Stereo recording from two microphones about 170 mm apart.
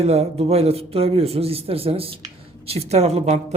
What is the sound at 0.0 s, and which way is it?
A woman's voice, 35° right (ahead or behind).